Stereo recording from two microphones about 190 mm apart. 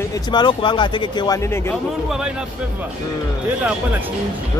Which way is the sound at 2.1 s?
5° right (ahead or behind).